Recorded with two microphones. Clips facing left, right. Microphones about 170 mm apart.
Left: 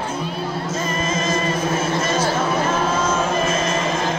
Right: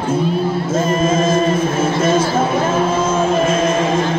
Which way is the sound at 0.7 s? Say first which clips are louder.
Right 9 dB; 50° right (ahead or behind).